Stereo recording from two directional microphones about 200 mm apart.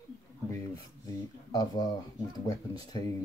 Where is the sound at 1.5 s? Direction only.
20° left (ahead or behind).